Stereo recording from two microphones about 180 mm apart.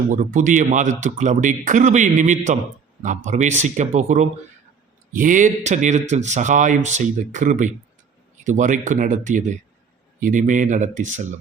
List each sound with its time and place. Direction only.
0.1 s speech: 50° right (ahead or behind)